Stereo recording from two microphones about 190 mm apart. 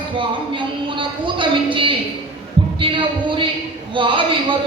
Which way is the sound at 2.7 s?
25° right (ahead or behind).